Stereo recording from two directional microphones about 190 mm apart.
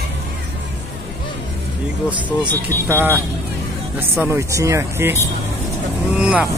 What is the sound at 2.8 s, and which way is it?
Speech, 10° right (ahead or behind).